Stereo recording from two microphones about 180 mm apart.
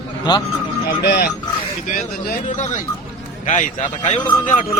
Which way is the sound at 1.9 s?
45° left (ahead or behind).